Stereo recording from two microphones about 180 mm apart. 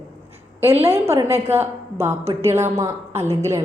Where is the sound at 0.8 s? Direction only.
15° right (ahead or behind).